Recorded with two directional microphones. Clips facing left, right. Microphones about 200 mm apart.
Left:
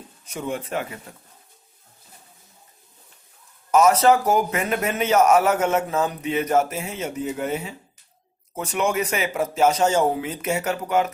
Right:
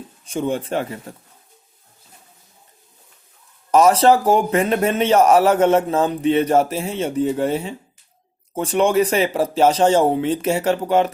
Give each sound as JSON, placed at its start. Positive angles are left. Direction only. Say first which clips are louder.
{"t": 0.3, "sound": "speech", "louder": "right 6 dB", "side_deg": -30}
{"t": 3.7, "sound": "speech", "louder": "right 3 dB", "side_deg": -30}